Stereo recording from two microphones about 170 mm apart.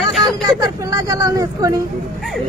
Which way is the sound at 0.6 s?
20° right (ahead or behind).